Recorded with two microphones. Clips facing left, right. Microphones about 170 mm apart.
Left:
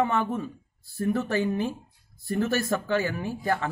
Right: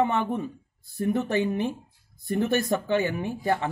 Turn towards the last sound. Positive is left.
turn(degrees=-20)  # may be behind; listen again after turning